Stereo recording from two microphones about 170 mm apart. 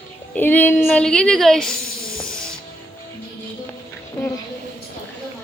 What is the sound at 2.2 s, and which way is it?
Music, 5° left (ahead or behind).